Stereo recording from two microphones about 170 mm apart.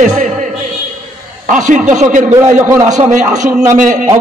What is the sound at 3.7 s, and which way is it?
Speech, 45° right (ahead or behind).